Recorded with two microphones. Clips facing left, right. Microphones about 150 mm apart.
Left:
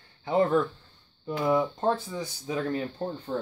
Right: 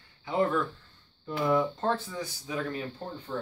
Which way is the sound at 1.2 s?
15° left (ahead or behind).